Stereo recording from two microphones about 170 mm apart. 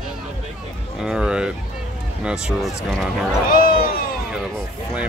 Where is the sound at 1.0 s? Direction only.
5° right (ahead or behind).